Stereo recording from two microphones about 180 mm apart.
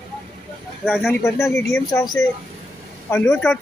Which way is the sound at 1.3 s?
15° left (ahead or behind).